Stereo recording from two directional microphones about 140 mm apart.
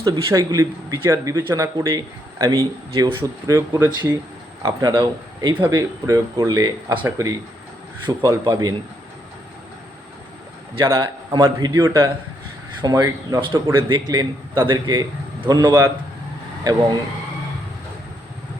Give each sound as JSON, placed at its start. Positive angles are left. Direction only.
{"t": 0.0, "sound": "speech", "side_deg": -25}
{"t": 10.9, "sound": "a man's voice", "side_deg": -30}